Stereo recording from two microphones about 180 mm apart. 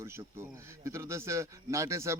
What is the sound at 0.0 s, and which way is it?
A man's voice, 15° right (ahead or behind).